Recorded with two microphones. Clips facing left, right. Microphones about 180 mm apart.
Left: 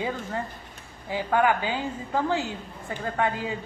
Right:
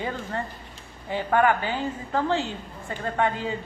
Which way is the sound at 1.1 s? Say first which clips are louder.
Right 1 dB; 10° left (ahead or behind).